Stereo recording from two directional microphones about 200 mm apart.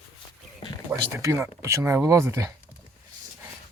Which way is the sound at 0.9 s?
15° right (ahead or behind).